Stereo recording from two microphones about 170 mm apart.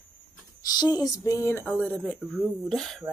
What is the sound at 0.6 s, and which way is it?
Speech, 25° left (ahead or behind).